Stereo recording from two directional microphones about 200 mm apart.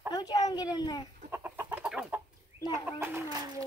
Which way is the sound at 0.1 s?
20° left (ahead or behind).